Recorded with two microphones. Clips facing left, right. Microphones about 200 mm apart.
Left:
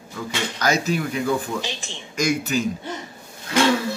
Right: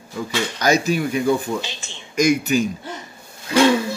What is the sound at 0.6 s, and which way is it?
Speech, 15° right (ahead or behind).